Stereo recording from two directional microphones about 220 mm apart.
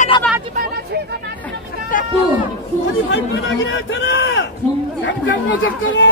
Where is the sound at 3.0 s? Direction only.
55° left (ahead or behind).